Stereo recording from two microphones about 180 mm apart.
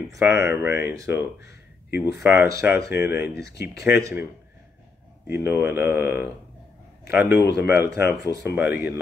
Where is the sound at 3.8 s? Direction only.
15° right (ahead or behind).